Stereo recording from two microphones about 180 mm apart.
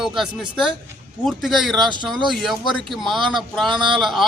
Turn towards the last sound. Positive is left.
turn(degrees=0)  # may be behind; listen again after turning